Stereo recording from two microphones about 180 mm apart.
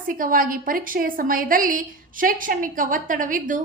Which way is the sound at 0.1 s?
50° right (ahead or behind).